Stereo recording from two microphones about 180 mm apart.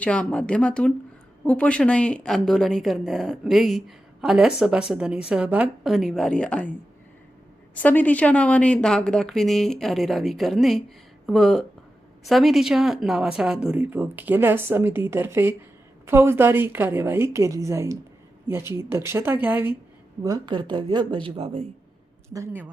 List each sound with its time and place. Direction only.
0.0 s speech: 5° left (ahead or behind)
7.8 s speech: 10° left (ahead or behind); by 19.7 s 10° right (ahead or behind)
20.2 s speech: 25° right (ahead or behind)
22.3 s speech: 20° right (ahead or behind)